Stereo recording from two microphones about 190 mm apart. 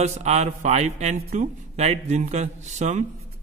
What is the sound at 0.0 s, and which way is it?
Speech, 35° right (ahead or behind).